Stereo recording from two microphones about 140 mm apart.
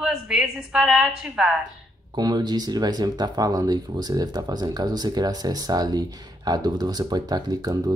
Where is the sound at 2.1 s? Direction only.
30° right (ahead or behind).